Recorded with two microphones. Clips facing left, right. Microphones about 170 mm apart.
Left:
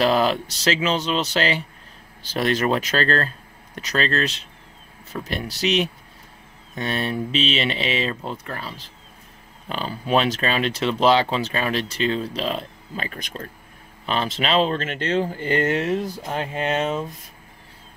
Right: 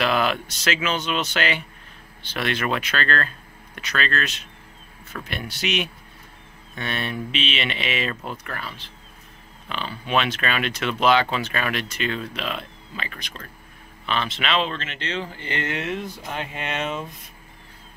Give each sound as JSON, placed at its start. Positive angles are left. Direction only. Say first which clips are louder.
{"t": 0.0, "sound": "speech", "louder": "left 3 dB", "side_deg": 35}